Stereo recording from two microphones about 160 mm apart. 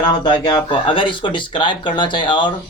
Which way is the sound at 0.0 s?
25° left (ahead or behind).